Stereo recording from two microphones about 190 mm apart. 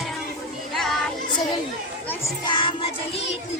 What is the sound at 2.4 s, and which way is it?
Music, 25° left (ahead or behind).